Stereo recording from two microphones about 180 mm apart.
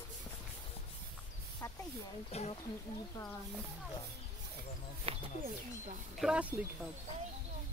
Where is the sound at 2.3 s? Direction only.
35° left (ahead or behind).